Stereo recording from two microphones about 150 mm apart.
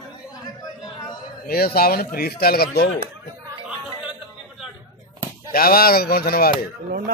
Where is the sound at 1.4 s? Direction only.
90° left.